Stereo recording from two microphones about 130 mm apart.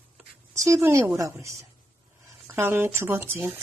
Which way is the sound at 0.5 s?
25° right (ahead or behind).